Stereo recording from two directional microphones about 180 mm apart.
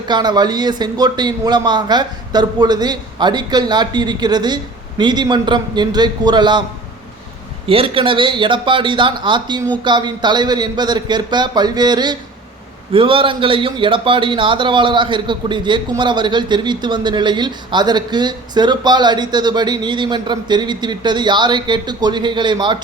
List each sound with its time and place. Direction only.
0.1 s a man's voice: 25° right (ahead or behind)
7.7 s a man's voice: 30° right (ahead or behind)